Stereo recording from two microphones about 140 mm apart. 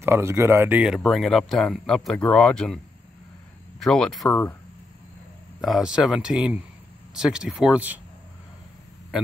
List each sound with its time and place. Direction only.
0.0 s speech: 20° right (ahead or behind)
0.9 s speech: centre (ahead or behind)
3.8 s speech: 5° left (ahead or behind)
5.6 s speech: 5° right (ahead or behind)